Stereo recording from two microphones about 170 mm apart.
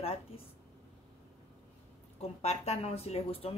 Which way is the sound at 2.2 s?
40° left (ahead or behind).